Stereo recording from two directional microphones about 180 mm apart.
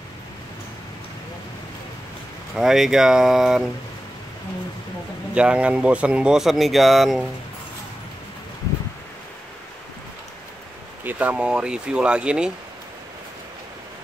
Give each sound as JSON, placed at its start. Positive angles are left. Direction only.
{"t": 2.5, "sound": "speech", "side_deg": 0}
{"t": 5.3, "sound": "speech", "side_deg": -5}
{"t": 11.1, "sound": "speech", "side_deg": -10}